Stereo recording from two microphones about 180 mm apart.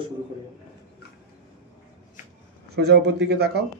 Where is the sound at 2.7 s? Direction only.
65° right (ahead or behind).